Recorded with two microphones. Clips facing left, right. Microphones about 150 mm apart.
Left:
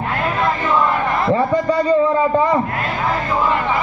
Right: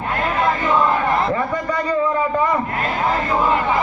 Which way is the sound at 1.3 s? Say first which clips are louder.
Left 5 dB; 30° left (ahead or behind).